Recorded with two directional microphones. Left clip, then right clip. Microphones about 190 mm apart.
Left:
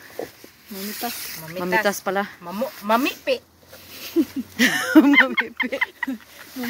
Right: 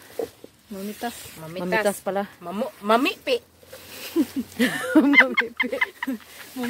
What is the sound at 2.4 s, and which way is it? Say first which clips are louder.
Speech: even; 65° right (ahead or behind).